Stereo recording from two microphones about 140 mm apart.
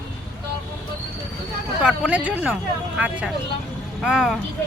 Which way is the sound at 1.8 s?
10° right (ahead or behind).